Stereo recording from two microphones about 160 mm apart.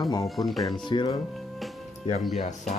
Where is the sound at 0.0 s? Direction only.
25° left (ahead or behind).